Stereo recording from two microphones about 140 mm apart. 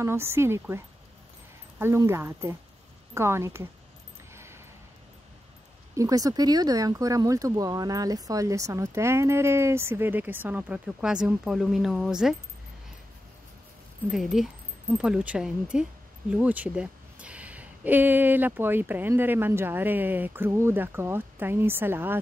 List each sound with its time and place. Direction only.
0.0 s speech: 20° right (ahead or behind)
4.3 s a sound: 20° right (ahead or behind)
5.9 s speech: 25° right (ahead or behind); by 12.4 s 5° right (ahead or behind)
14.1 s speech: centre (ahead or behind)